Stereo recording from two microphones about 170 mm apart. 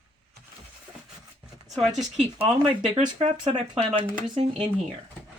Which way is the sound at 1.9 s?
Centre (ahead or behind).